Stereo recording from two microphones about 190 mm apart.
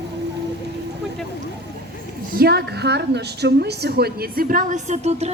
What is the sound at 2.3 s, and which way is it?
A woman's voice, 55° right (ahead or behind).